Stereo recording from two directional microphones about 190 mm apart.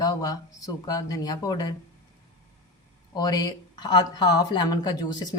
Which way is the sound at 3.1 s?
20° left (ahead or behind).